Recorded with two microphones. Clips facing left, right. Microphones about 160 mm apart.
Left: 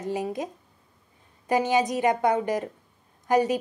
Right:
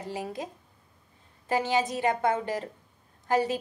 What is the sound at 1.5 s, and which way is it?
A woman's voice, 20° left (ahead or behind).